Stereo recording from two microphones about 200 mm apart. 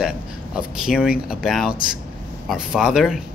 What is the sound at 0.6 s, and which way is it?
Speech, 5° right (ahead or behind).